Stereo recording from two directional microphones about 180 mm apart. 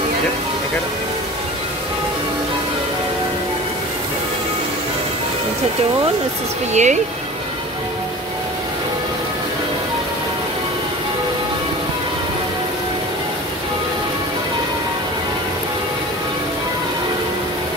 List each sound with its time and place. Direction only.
6.7 s speech: 40° right (ahead or behind)